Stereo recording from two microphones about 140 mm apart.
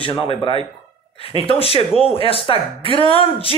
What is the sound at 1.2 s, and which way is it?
Speech, 40° left (ahead or behind).